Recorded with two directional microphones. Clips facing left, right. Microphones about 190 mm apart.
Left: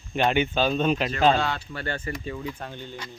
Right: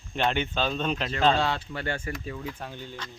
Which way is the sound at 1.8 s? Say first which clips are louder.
Even; 10° right (ahead or behind).